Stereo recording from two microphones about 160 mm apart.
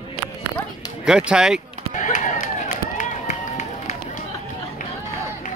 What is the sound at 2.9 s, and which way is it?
Run, 50° left (ahead or behind).